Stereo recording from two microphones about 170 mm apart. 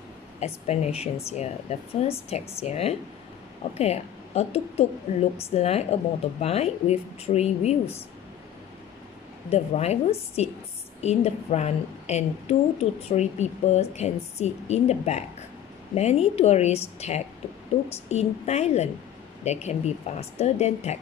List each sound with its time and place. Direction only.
0.4 s speech: 40° left (ahead or behind)
9.5 s speech: 40° left (ahead or behind)